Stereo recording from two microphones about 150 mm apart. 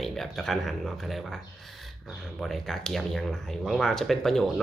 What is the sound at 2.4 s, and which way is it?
Speech, centre (ahead or behind).